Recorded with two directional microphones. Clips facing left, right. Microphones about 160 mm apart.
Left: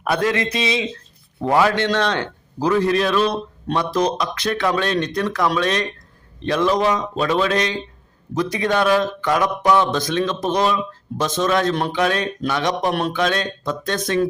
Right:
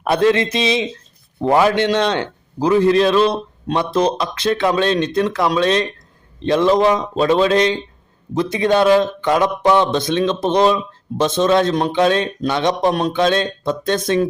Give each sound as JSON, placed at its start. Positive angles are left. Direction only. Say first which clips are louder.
{"t": 0.0, "sound": "speech", "louder": "right 5 dB", "side_deg": -25}